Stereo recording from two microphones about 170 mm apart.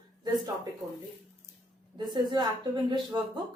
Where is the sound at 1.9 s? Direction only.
25° right (ahead or behind).